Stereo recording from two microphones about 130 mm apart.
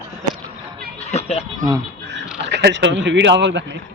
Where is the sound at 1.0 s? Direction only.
55° left (ahead or behind).